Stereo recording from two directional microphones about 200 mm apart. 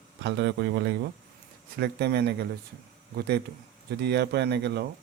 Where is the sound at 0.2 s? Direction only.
60° right (ahead or behind).